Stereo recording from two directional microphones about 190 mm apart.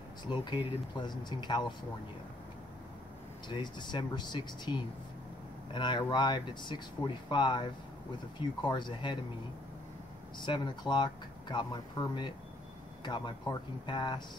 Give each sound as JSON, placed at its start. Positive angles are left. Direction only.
{"t": 0.2, "sound": "speech", "side_deg": 25}
{"t": 3.4, "sound": "speech", "side_deg": 25}
{"t": 10.4, "sound": "speech", "side_deg": 25}